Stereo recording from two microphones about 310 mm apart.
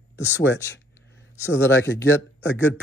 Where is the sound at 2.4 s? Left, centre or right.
Left.